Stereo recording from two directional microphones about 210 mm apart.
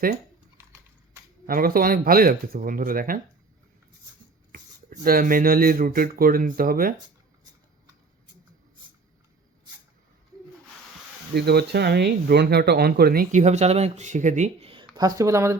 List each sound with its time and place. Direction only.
0.5 s horse: 15° right (ahead or behind)
1.5 s speech: 45° right (ahead or behind)
5.0 s speech: 45° right (ahead or behind)
11.3 s speech: 50° right (ahead or behind); by 15.5 s 15° right (ahead or behind)